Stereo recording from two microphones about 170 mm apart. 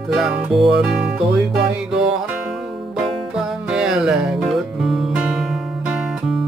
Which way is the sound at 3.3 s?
5° right (ahead or behind).